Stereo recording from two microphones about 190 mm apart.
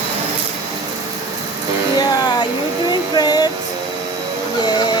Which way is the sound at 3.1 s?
20° left (ahead or behind).